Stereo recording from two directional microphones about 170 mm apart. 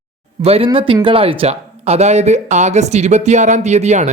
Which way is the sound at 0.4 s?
35° right (ahead or behind).